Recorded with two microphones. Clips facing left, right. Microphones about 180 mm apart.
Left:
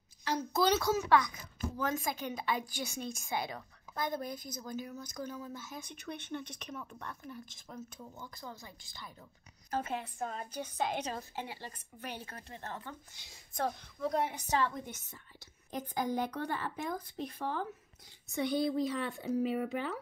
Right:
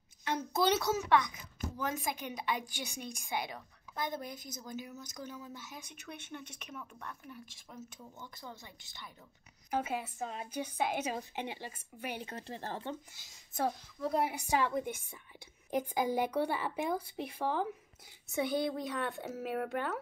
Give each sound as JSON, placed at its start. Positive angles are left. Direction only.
{"t": 0.6, "sound": "a woman's voice", "side_deg": -25}
{"t": 9.7, "sound": "a woman's voice", "side_deg": -10}
{"t": 12.4, "sound": "speech", "side_deg": -30}
{"t": 13.1, "sound": "a woman's voice", "side_deg": -5}